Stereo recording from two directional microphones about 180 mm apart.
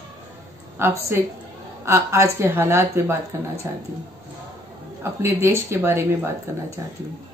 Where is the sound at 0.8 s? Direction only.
15° right (ahead or behind).